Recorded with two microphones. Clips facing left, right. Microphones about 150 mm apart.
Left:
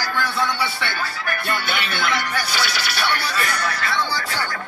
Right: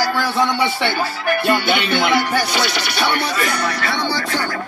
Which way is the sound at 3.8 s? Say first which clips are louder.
Right 3 dB; 65° right (ahead or behind).